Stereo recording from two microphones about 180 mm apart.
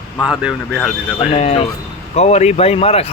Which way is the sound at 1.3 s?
35° left (ahead or behind).